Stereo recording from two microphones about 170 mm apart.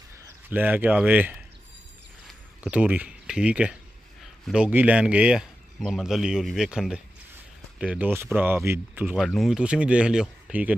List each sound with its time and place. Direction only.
0.2 s speech: 10° right (ahead or behind)
2.6 s speech: 5° right (ahead or behind)